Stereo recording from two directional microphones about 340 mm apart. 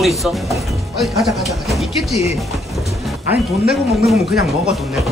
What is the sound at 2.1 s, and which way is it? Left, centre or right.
Speech, centre.